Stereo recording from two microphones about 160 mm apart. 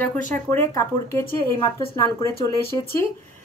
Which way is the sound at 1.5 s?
30° left (ahead or behind).